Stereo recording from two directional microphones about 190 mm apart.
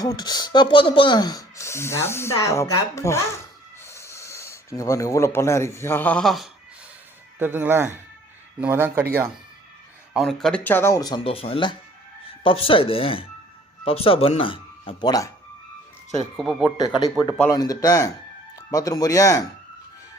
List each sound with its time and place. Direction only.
0.0 s speech: 20° left (ahead or behind); by 6.5 s centre (ahead or behind)
7.3 s speech: 10° right (ahead or behind)
10.2 s speech: centre (ahead or behind); by 15.3 s 20° left (ahead or behind)
16.4 s speech: centre (ahead or behind)
17.5 s speech: 20° left (ahead or behind)